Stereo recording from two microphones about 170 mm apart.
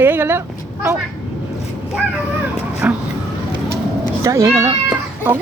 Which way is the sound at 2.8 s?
10° right (ahead or behind).